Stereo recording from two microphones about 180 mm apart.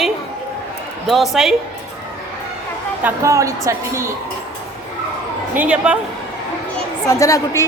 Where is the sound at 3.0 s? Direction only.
15° right (ahead or behind).